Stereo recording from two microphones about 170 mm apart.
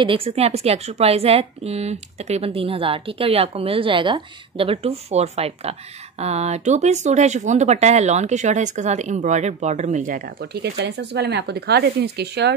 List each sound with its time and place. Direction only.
0.0 s a woman's voice: 30° right (ahead or behind); by 10.3 s 50° right (ahead or behind)
10.4 s speech: 80° right